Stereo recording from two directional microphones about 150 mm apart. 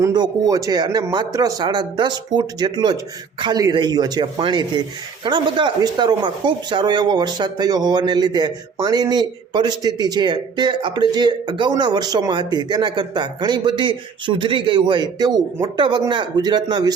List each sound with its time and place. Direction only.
0.0 s speech: 25° right (ahead or behind)